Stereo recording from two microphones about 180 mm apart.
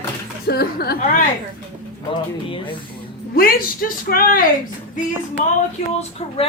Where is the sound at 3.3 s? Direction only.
55° left (ahead or behind).